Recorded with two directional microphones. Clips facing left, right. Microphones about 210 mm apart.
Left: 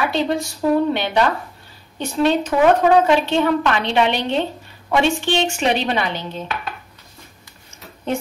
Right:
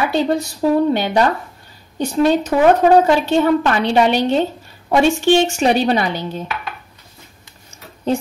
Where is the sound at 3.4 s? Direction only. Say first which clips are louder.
Right 3 dB; 40° right (ahead or behind).